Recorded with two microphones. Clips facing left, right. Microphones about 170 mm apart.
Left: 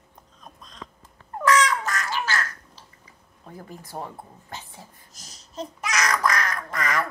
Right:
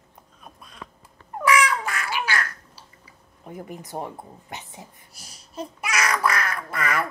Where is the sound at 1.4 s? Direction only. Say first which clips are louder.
Even; 10° right (ahead or behind).